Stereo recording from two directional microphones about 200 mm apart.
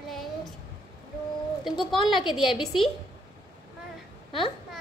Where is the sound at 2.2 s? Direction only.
25° left (ahead or behind).